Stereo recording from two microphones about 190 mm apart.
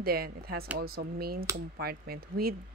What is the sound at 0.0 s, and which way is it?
Speech, 55° right (ahead or behind).